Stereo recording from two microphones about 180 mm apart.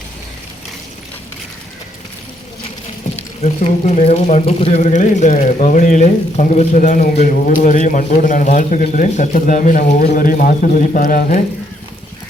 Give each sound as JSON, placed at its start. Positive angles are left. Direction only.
{"t": 3.4, "sound": "speech", "side_deg": 40}